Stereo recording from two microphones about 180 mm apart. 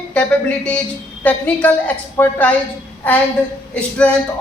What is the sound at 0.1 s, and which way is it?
A woman's voice, 5° left (ahead or behind).